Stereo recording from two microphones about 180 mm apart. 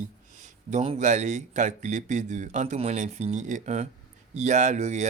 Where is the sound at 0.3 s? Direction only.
40° right (ahead or behind).